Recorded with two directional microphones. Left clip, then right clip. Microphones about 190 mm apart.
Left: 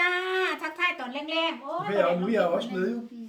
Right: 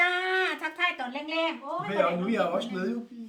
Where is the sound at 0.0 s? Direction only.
15° right (ahead or behind).